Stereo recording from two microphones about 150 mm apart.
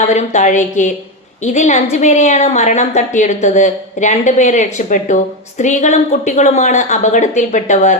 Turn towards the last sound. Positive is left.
turn(degrees=55)  # may be behind; listen again after turning